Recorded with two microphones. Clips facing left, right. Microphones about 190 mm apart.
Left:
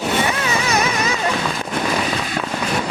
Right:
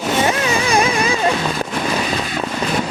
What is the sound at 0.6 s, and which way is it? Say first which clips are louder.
Music: right 4 dB; 30° right (ahead or behind).